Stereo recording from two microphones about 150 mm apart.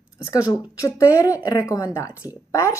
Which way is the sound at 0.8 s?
20° left (ahead or behind).